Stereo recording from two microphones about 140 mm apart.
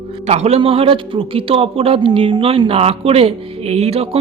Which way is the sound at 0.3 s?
50° right (ahead or behind).